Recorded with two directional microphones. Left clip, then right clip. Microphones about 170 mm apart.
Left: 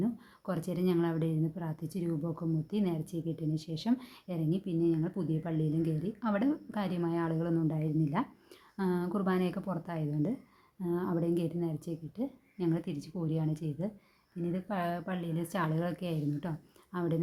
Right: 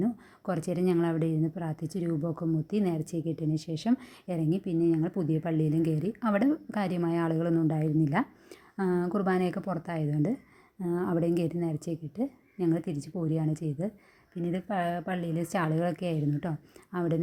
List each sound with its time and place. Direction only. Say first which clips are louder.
0.0 s a woman's voice: right 4 dB; 25° right (ahead or behind)